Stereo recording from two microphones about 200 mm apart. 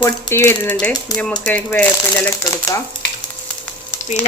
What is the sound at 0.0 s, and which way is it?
Speech, 10° left (ahead or behind).